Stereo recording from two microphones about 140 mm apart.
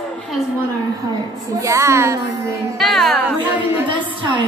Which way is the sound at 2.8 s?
Centre (ahead or behind).